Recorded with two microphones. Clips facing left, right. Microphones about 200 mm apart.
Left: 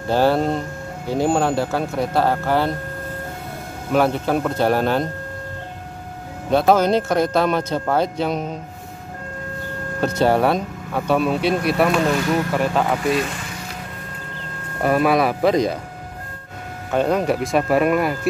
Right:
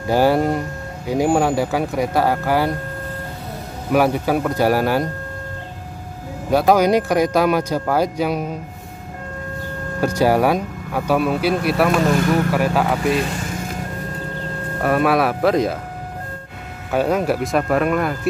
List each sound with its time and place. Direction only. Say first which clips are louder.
0.1 s speech: right 1 dB; 10° right (ahead or behind)
3.9 s speech: right 1 dB; 10° right (ahead or behind)
6.5 s speech: right 1 dB; 10° right (ahead or behind)
9.9 s speech: right 1 dB; 10° right (ahead or behind)
13.5 s music: right 6 dB; 45° right (ahead or behind)
14.8 s speech: even; centre (ahead or behind)
16.9 s speech: even; 5° right (ahead or behind)